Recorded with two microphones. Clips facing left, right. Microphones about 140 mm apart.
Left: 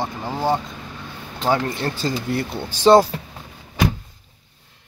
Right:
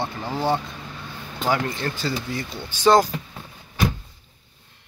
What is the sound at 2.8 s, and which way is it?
Speech, 30° left (ahead or behind).